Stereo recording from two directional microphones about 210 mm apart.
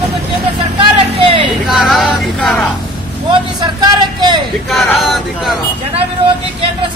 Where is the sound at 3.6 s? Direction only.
20° right (ahead or behind).